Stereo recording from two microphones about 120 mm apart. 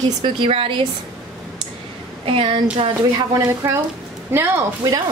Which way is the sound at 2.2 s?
50° right (ahead or behind).